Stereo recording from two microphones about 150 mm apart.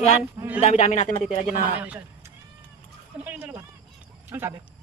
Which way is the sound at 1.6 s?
10° right (ahead or behind).